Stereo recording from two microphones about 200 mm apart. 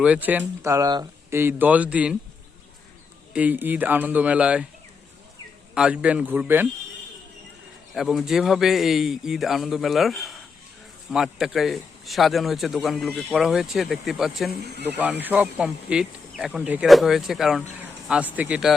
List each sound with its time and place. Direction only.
0.0 s speech: 5° right (ahead or behind)
3.3 s speech: 10° right (ahead or behind)
5.7 s a man's voice: 5° right (ahead or behind)
7.9 s a man's voice: centre (ahead or behind)
14.6 s speech: 55° right (ahead or behind)
15.2 s a man's voice: 10° right (ahead or behind)